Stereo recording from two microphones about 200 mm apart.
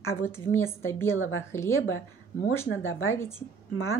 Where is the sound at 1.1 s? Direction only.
80° left.